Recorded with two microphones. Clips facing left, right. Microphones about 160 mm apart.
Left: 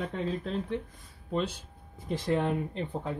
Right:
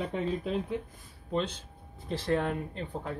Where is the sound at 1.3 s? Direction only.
5° left (ahead or behind).